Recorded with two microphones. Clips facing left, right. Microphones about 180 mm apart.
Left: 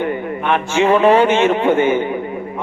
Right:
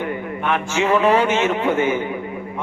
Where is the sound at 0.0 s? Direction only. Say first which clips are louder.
Left 4 dB; 25° left (ahead or behind).